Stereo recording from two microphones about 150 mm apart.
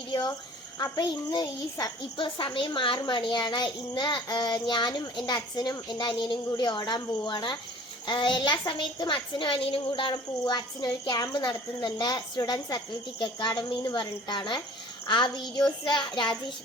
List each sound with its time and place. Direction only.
0.1 s a child's voice: 25° left (ahead or behind)